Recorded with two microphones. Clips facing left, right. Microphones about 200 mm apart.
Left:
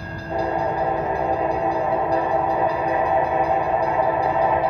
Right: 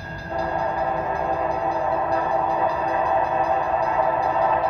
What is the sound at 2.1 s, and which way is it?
Train, 15° left (ahead or behind).